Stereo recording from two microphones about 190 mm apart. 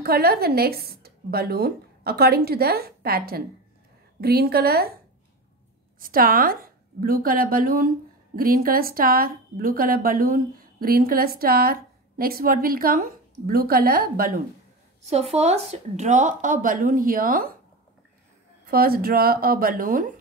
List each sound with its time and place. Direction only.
0.0 s speech: 55° right (ahead or behind)
5.9 s a woman's voice: 50° right (ahead or behind)
15.0 s speech: 35° right (ahead or behind)
18.7 s a woman's voice: 50° right (ahead or behind)